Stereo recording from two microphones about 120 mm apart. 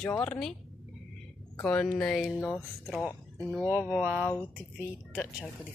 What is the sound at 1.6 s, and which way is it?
Speech, 10° left (ahead or behind).